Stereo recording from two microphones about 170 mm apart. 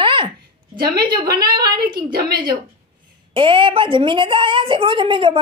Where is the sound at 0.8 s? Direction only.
25° right (ahead or behind).